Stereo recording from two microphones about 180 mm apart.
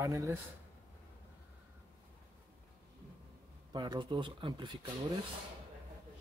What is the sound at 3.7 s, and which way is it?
Speech, 25° right (ahead or behind).